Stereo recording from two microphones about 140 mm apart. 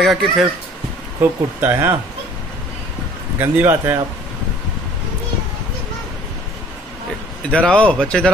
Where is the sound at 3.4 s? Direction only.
15° right (ahead or behind).